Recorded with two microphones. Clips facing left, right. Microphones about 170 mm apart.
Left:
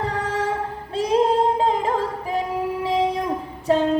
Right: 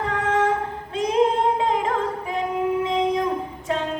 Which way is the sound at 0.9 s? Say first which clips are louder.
Left 1 dB; 35° left (ahead or behind).